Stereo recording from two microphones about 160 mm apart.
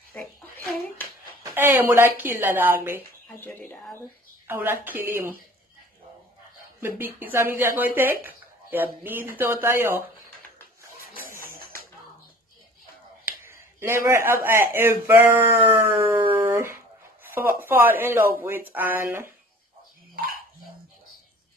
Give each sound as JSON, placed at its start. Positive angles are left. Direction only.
{"t": 0.2, "sound": "a sound", "side_deg": 10}
{"t": 1.4, "sound": "speech", "side_deg": -15}
{"t": 3.3, "sound": "speech", "side_deg": 10}
{"t": 4.5, "sound": "a woman's voice", "side_deg": -15}
{"t": 6.8, "sound": "speech", "side_deg": -10}
{"t": 11.4, "sound": "a sound", "side_deg": -65}
{"t": 13.7, "sound": "speech", "side_deg": -15}
{"t": 16.3, "sound": "dog", "side_deg": -15}
{"t": 17.3, "sound": "speech", "side_deg": -15}